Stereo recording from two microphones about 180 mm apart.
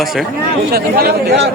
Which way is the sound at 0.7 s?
60° right (ahead or behind).